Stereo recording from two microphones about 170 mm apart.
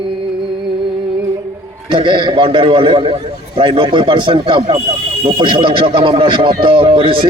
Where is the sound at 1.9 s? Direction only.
30° right (ahead or behind).